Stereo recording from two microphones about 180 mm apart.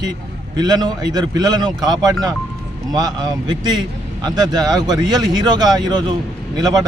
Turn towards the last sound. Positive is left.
turn(degrees=-20)  # may be behind; listen again after turning